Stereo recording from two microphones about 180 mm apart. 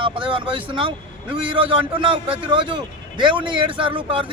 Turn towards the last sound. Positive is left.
turn(degrees=-30)  # may be behind; listen again after turning